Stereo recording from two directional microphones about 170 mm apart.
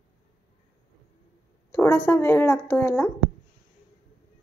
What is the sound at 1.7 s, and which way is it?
A woman's voice, 10° left (ahead or behind).